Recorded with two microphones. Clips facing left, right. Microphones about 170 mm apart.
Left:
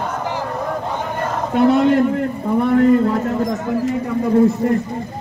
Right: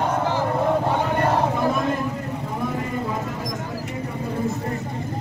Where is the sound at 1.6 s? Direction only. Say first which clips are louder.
Left 9 dB; 80° left.